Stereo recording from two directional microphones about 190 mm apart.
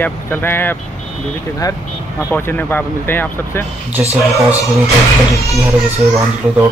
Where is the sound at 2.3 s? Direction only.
10° left (ahead or behind).